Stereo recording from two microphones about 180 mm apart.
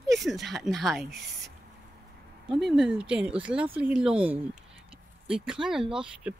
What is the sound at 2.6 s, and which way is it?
Speech, centre (ahead or behind).